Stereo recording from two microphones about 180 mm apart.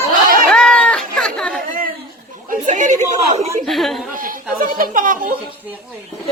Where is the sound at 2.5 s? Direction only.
45° right (ahead or behind).